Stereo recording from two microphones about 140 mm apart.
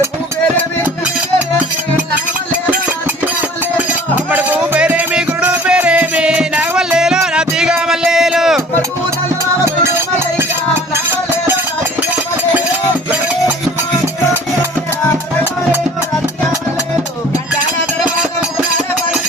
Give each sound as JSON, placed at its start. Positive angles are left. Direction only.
{"t": 4.3, "sound": "music", "side_deg": -10}
{"t": 9.8, "sound": "music", "side_deg": -15}